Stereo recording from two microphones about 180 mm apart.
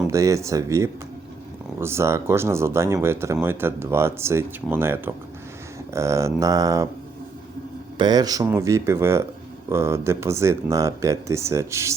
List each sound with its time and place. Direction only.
0.1 s speech: 15° right (ahead or behind)
7.9 s speech: 20° right (ahead or behind)